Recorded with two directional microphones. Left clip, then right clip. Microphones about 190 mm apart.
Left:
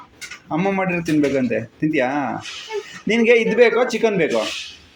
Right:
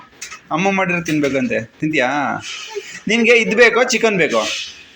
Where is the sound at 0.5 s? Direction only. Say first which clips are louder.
Right 4 dB; 10° left (ahead or behind).